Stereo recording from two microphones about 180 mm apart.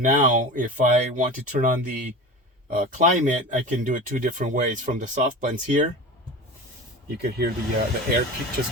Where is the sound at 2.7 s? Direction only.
45° right (ahead or behind).